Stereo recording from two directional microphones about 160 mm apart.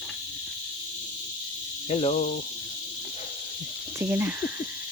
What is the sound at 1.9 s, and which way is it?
Cricket, 40° left (ahead or behind).